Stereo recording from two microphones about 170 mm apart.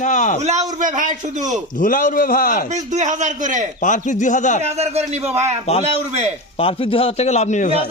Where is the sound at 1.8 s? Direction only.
50° left (ahead or behind).